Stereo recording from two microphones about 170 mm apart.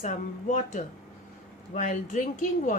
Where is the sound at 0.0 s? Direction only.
45° left (ahead or behind).